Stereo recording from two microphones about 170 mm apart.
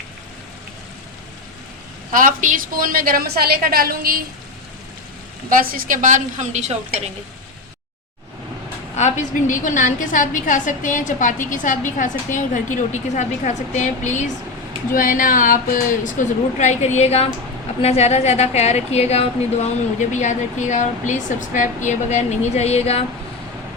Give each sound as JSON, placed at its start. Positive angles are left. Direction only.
{"t": 2.1, "sound": "a woman's voice", "side_deg": -50}
{"t": 5.5, "sound": "a woman's voice", "side_deg": -55}
{"t": 9.0, "sound": "a woman's voice", "side_deg": 45}